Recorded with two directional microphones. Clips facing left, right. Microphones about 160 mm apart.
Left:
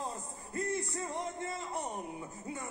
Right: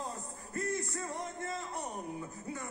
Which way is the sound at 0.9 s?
20° left (ahead or behind).